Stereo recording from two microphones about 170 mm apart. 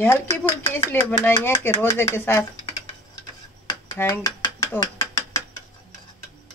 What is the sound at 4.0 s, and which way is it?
Dishes, 20° left (ahead or behind).